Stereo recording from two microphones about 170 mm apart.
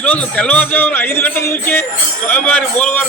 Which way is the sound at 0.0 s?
10° left (ahead or behind).